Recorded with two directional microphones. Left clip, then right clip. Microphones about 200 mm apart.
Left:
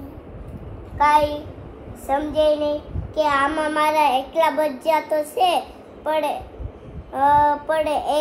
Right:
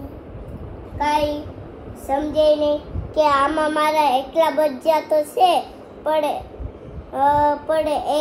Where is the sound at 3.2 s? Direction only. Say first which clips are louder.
Right 3 dB; 20° right (ahead or behind).